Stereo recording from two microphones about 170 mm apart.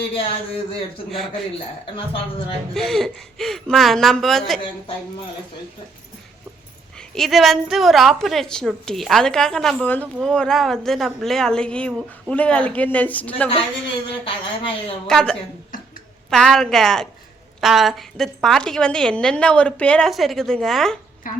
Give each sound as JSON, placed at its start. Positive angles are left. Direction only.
{"t": 0.1, "sound": "a woman's voice", "side_deg": 35}
{"t": 2.7, "sound": "a woman's voice", "side_deg": 0}
{"t": 7.1, "sound": "a woman's voice", "side_deg": 0}
{"t": 14.3, "sound": "a woman's voice", "side_deg": 30}
{"t": 15.0, "sound": "a woman's voice", "side_deg": 5}
{"t": 21.2, "sound": "a woman's voice", "side_deg": 55}